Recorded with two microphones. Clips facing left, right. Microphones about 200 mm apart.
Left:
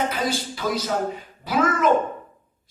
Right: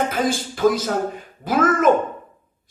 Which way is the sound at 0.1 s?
50° right (ahead or behind).